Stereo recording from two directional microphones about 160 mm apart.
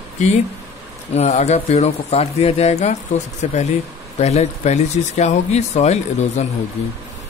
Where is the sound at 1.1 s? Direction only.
45° left (ahead or behind).